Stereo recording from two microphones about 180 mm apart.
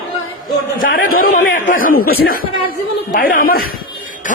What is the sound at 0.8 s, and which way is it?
A man's voice, 50° left (ahead or behind).